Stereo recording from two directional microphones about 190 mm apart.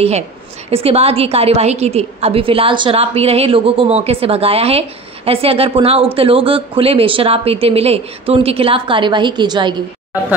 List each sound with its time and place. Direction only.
0.7 s a woman's voice: 30° right (ahead or behind)